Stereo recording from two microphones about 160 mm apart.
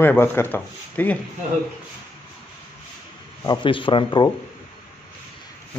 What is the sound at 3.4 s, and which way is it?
Speech, 30° left (ahead or behind).